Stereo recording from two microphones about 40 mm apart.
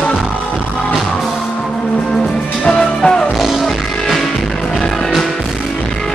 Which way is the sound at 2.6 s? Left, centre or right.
Centre.